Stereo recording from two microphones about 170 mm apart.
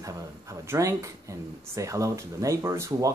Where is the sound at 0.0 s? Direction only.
20° right (ahead or behind).